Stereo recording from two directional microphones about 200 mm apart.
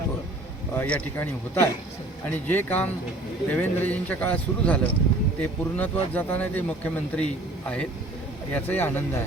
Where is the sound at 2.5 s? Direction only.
10° left (ahead or behind).